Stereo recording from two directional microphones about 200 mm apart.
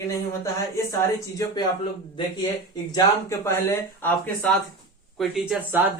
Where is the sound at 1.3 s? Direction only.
20° left (ahead or behind).